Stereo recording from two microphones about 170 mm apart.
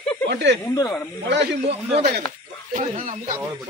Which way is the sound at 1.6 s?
35° right (ahead or behind).